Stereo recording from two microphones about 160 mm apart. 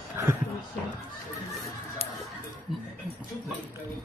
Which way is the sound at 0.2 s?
15° right (ahead or behind).